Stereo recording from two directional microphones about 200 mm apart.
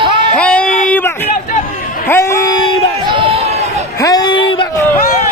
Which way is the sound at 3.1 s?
25° right (ahead or behind).